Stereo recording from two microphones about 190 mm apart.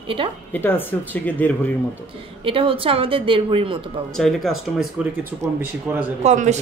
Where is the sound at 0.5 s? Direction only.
10° left (ahead or behind).